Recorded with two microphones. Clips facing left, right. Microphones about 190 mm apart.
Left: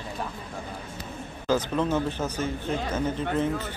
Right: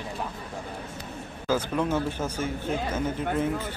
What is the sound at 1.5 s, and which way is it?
Speech, 10° right (ahead or behind).